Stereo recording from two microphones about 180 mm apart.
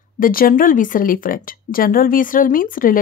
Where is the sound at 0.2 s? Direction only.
55° left (ahead or behind).